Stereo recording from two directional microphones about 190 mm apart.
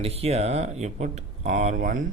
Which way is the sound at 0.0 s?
30° right (ahead or behind).